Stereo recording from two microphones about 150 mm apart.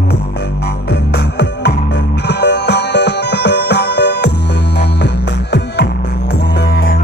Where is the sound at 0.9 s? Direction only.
90° left.